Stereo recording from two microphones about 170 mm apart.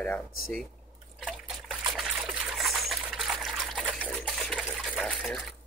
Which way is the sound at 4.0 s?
10° right (ahead or behind).